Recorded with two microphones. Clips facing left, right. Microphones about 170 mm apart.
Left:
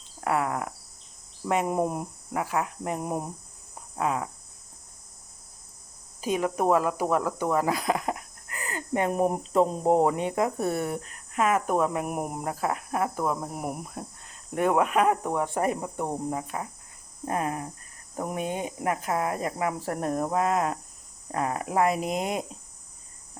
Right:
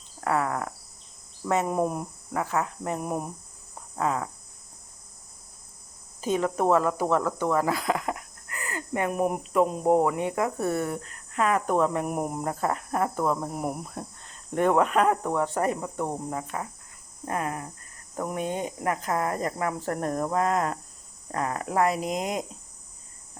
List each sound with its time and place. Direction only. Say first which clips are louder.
0.2 s speech: even; 15° left (ahead or behind)
6.2 s speech: right 1 dB; 10° left (ahead or behind)
17.2 s cricket: left 1 dB; 20° left (ahead or behind)
18.2 s speech: right 1 dB; 15° left (ahead or behind)